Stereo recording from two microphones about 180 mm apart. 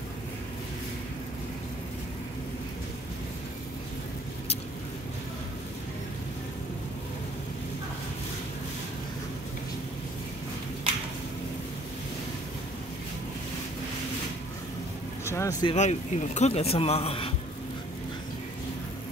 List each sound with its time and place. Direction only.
15.2 s vehicle: 15° left (ahead or behind)
15.6 s speech: 40° left (ahead or behind)